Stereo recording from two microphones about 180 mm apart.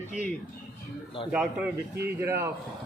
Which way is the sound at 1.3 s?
5° right (ahead or behind).